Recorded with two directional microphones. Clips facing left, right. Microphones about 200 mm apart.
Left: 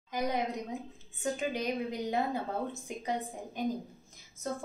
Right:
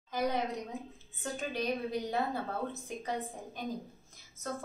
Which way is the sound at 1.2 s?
15° left (ahead or behind).